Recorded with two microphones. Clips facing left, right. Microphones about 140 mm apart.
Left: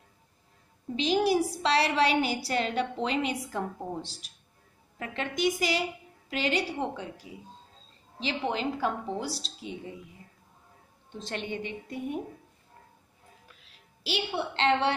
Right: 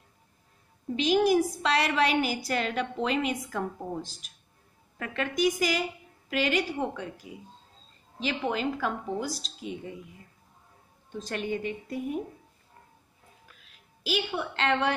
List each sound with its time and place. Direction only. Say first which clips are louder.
0.9 s a woman's voice: right 2 dB; 30° left (ahead or behind)
11.1 s a woman's voice: right 3 dB; 25° left (ahead or behind)
14.0 s a woman's voice: right 1 dB; 30° left (ahead or behind)